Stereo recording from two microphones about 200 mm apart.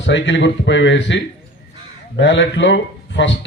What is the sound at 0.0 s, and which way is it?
A man's voice, 65° left (ahead or behind).